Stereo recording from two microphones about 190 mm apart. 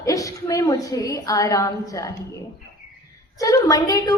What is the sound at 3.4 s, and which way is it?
Speech, 15° left (ahead or behind).